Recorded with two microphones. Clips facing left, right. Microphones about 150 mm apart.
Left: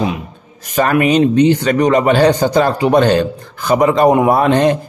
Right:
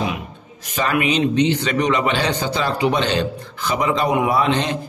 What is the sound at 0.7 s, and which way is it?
A man's voice, 45° left (ahead or behind).